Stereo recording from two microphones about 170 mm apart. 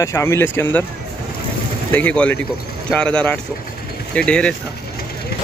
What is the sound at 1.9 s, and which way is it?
Speech, 10° left (ahead or behind).